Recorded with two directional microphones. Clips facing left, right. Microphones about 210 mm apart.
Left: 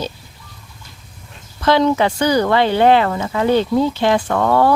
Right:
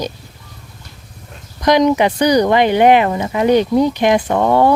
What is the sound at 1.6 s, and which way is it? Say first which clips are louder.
Speech: right 2 dB; 15° right (ahead or behind).